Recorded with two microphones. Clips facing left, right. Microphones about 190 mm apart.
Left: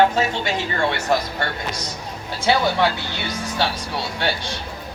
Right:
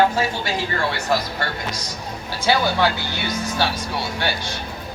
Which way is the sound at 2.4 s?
25° left (ahead or behind).